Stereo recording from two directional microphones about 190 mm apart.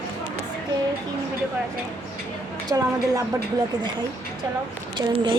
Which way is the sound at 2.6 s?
20° right (ahead or behind).